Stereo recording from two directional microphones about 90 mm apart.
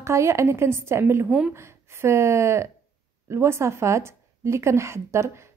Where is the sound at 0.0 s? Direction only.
30° right (ahead or behind).